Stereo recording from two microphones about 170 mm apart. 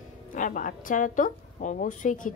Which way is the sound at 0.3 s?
50° left (ahead or behind).